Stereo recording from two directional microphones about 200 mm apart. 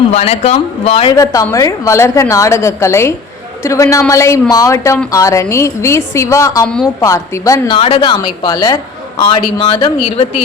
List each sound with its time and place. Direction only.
0.1 s speech: 30° left (ahead or behind)
1.1 s a woman's voice: 15° left (ahead or behind)
7.8 s speech: 25° left (ahead or behind)